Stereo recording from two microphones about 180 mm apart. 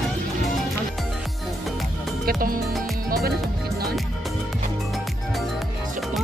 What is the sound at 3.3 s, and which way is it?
Music, 60° right (ahead or behind).